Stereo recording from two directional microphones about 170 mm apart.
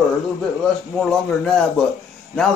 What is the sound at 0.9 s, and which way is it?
Speech, 5° left (ahead or behind).